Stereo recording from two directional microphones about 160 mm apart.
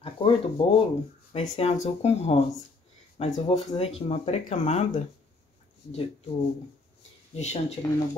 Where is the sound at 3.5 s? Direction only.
40° left (ahead or behind).